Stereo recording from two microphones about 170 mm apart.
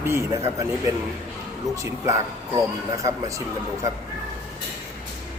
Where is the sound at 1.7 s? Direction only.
20° right (ahead or behind).